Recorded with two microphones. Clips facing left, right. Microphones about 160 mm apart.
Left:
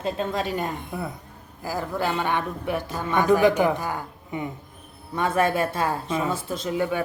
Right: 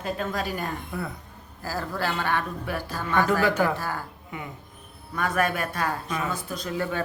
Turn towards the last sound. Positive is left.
turn(degrees=15)  # may be behind; listen again after turning